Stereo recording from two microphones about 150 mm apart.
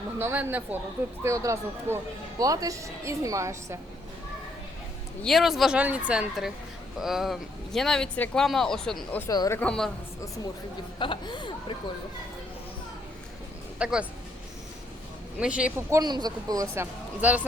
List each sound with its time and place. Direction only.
0.2 s speech: 15° right (ahead or behind)
5.2 s speech: centre (ahead or behind)
9.2 s a woman's voice: 20° left (ahead or behind)
9.6 s speech: 5° left (ahead or behind)
10.2 s a woman's voice: 20° left (ahead or behind)
13.7 s speech: 5° right (ahead or behind)
15.4 s speech: 5° right (ahead or behind)
15.9 s speech: 25° right (ahead or behind); by 17.4 s 10° right (ahead or behind)